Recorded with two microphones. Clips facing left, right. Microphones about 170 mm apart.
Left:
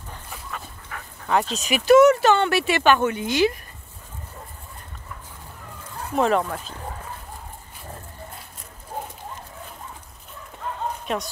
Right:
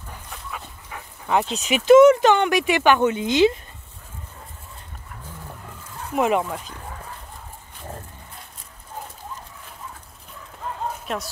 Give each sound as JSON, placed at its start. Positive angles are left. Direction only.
{"t": 0.3, "sound": "dog", "side_deg": 0}
{"t": 0.8, "sound": "speech", "side_deg": -15}
{"t": 6.1, "sound": "speech", "side_deg": -10}
{"t": 11.1, "sound": "speech", "side_deg": 0}